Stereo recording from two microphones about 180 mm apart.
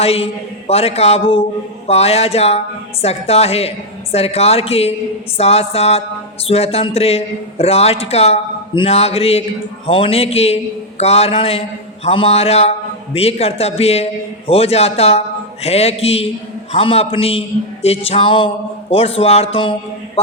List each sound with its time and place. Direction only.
0.0 s a man's voice: 35° left (ahead or behind)